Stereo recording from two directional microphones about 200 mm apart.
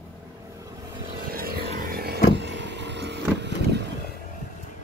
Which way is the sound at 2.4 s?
60° right (ahead or behind).